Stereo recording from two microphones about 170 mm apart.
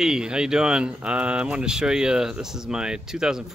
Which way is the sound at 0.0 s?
5° right (ahead or behind).